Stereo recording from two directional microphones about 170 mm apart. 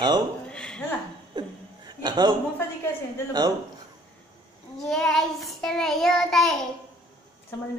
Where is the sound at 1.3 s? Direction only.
25° right (ahead or behind).